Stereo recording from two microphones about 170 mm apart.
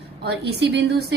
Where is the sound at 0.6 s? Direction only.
85° right.